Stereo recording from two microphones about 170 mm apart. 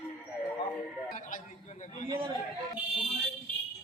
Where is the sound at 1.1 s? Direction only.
50° left (ahead or behind).